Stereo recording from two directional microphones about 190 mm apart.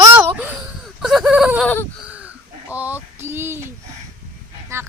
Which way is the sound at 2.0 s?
5° right (ahead or behind).